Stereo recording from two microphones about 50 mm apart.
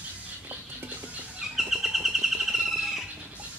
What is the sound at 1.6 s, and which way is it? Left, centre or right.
Bird, centre.